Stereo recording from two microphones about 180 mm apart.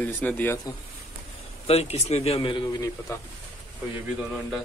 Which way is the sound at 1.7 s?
35° left (ahead or behind).